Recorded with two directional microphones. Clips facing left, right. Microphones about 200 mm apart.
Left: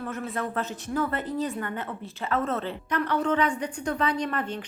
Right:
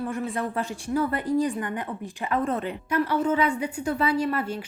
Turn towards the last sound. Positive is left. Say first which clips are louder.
# right 3 dB
turn(degrees=-10)  # may be behind; listen again after turning